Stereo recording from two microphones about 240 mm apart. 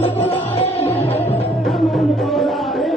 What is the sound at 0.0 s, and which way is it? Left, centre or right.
Music, left.